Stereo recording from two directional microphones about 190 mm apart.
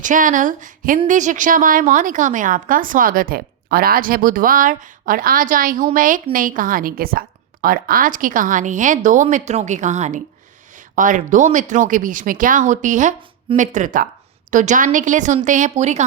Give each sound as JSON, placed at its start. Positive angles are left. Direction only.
{"t": 0.0, "sound": "a woman's voice", "side_deg": -45}